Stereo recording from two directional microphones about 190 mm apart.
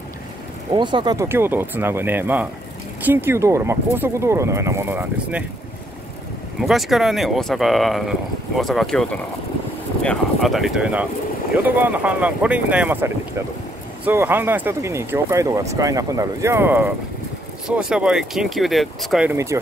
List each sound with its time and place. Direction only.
0.7 s speech: 25° right (ahead or behind); by 5.4 s 10° right (ahead or behind)
6.6 s speech: centre (ahead or behind)
19.3 s speech: 15° right (ahead or behind)